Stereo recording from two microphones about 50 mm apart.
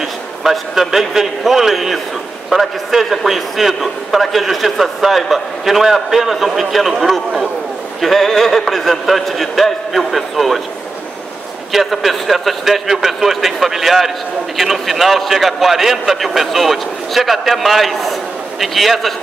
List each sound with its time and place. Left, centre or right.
0.4 s a man's voice: centre
11.7 s a man's voice: centre